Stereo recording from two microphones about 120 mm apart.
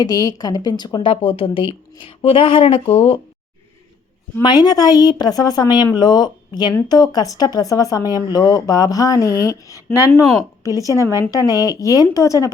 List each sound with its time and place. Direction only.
0.0 s speech: 30° left (ahead or behind)
1.1 s speech: 50° left (ahead or behind)
4.4 s a woman's voice: 35° left (ahead or behind)